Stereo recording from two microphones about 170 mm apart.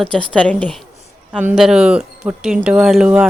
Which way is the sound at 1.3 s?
5° right (ahead or behind).